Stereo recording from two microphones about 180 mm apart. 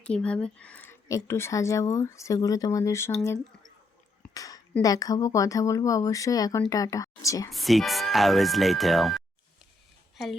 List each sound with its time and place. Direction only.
0.0 s speech: 5° left (ahead or behind)
4.2 s a sound: 20° left (ahead or behind)
4.8 s speech: 20° left (ahead or behind)
7.5 s speech: centre (ahead or behind)